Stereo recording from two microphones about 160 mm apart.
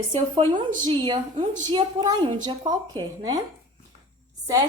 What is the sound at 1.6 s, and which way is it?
Speech, 25° right (ahead or behind).